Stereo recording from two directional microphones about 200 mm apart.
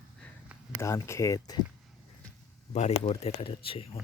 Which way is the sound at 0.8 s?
15° left (ahead or behind).